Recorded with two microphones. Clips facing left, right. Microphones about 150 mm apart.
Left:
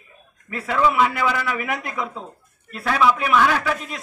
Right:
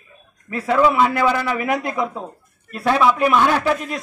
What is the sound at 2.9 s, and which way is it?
A man's voice, 30° right (ahead or behind).